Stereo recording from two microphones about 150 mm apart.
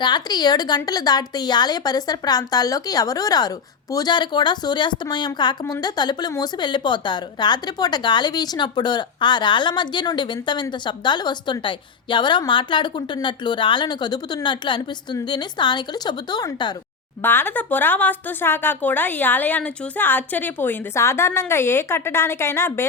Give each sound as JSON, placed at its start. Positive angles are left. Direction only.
{"t": 0.0, "sound": "a woman's voice", "side_deg": 30}
{"t": 17.2, "sound": "a woman's voice", "side_deg": 15}